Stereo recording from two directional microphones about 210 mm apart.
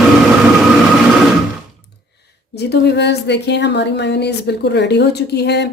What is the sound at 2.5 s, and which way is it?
Speech, 50° left (ahead or behind).